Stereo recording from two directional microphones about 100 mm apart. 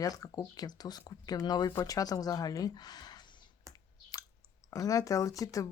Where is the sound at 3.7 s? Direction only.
30° right (ahead or behind).